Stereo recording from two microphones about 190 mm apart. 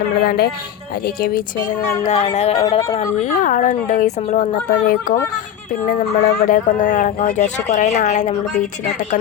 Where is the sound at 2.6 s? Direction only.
20° left (ahead or behind).